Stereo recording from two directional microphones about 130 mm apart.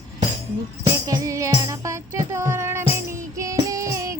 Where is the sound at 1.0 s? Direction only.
25° right (ahead or behind).